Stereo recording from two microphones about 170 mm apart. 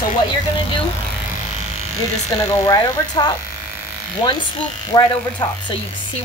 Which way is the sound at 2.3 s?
25° left (ahead or behind).